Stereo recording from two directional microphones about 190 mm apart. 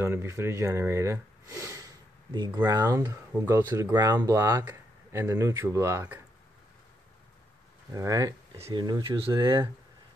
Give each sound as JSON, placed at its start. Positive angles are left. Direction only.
{"t": 0.0, "sound": "speech", "side_deg": -15}
{"t": 7.9, "sound": "speech", "side_deg": -15}